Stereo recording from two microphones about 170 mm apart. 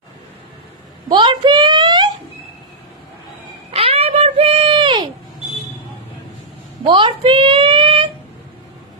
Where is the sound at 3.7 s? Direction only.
35° right (ahead or behind).